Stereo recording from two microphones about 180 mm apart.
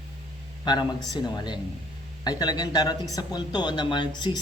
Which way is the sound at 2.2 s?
20° left (ahead or behind).